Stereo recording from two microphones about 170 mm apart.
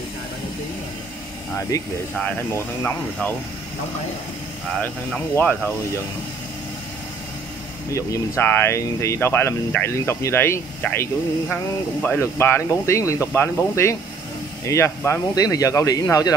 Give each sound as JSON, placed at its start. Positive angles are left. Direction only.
{"t": 1.7, "sound": "speech", "side_deg": 20}
{"t": 4.7, "sound": "speech", "side_deg": 10}
{"t": 7.9, "sound": "speech", "side_deg": 15}